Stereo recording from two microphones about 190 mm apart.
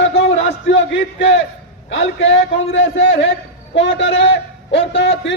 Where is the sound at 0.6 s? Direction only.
80° left.